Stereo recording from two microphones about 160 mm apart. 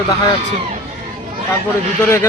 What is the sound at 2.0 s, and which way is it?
Speech, 15° left (ahead or behind).